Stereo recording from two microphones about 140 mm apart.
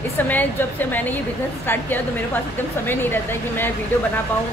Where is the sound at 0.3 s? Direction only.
15° left (ahead or behind).